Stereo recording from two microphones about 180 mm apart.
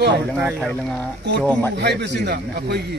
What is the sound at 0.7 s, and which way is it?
Speech, 5° left (ahead or behind).